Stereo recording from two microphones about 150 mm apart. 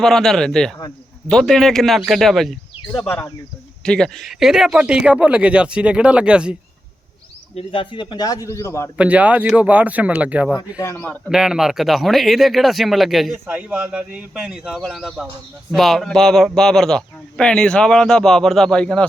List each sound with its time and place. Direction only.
0.0 s speech: centre (ahead or behind)
3.0 s speech: 15° left (ahead or behind)
3.8 s speech: 5° left (ahead or behind)
7.5 s a man's voice: 35° left (ahead or behind); by 8.9 s 20° left (ahead or behind)
9.0 s speech: 10° right (ahead or behind)
10.6 s a man's voice: 25° left (ahead or behind)
10.9 s speech: 10° left (ahead or behind)
11.3 s speech: 5° right (ahead or behind)